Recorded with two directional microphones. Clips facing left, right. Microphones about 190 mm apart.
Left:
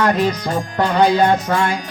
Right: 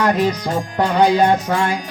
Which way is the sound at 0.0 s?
15° right (ahead or behind).